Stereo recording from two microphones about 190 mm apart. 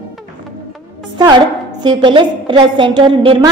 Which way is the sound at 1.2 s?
20° right (ahead or behind).